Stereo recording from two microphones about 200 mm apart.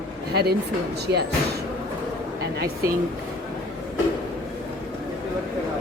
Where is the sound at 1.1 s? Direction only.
15° right (ahead or behind).